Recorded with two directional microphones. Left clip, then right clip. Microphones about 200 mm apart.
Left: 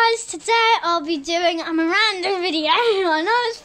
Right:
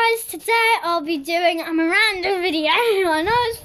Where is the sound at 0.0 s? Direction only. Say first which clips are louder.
Left 1 dB; 5° left (ahead or behind).